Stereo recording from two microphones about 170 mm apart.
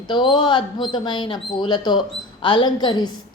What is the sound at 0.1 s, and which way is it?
A woman's voice, 30° left (ahead or behind).